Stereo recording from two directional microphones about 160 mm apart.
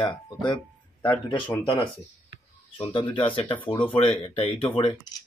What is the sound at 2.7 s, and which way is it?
Speech, 35° left (ahead or behind).